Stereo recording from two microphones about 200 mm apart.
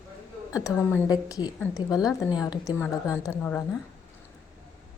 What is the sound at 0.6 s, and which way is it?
Speech, 15° left (ahead or behind).